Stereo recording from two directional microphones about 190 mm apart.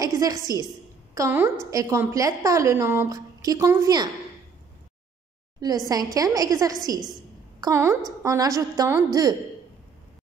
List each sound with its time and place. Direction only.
0.0 s a woman's voice: 20° right (ahead or behind)
5.6 s a woman's voice: 20° right (ahead or behind)